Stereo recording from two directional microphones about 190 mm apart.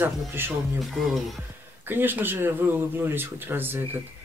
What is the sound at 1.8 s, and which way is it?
Speech, 10° right (ahead or behind).